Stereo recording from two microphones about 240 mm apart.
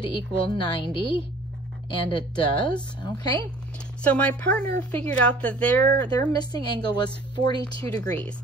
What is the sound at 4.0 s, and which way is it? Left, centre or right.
A woman's voice, centre.